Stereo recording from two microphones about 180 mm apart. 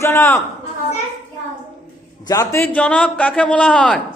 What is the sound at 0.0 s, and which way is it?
Speech, 15° left (ahead or behind).